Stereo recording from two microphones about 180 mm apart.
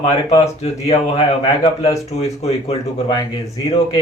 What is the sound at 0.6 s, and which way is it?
Speech, 35° left (ahead or behind).